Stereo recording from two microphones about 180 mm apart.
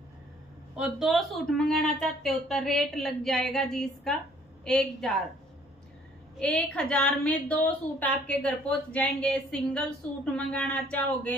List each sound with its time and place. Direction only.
0.7 s a woman's voice: 5° right (ahead or behind)
6.4 s a woman's voice: 5° left (ahead or behind)